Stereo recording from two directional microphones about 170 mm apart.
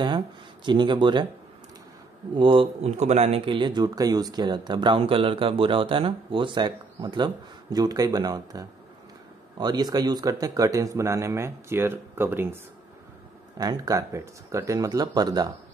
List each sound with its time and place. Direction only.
0.7 s speech: 25° right (ahead or behind)
2.3 s speech: 30° right (ahead or behind); by 12.5 s 15° right (ahead or behind)
13.6 s speech: 20° right (ahead or behind)